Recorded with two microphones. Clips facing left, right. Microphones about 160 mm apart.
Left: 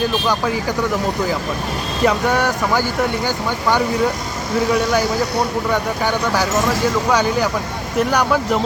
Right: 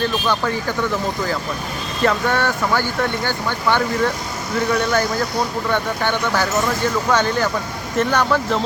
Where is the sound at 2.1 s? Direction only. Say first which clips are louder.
Left 1 dB; 15° left (ahead or behind).